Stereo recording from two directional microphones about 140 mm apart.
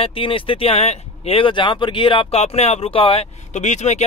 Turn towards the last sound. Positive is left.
turn(degrees=55)  # may be behind; listen again after turning